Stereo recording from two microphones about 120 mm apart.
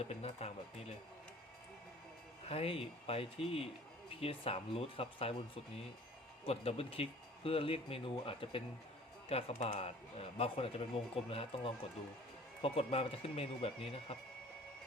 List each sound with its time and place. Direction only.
0.0 s a man's voice: 60° left (ahead or behind)
2.5 s speech: 55° left (ahead or behind)
6.4 s a man's voice: 55° left (ahead or behind)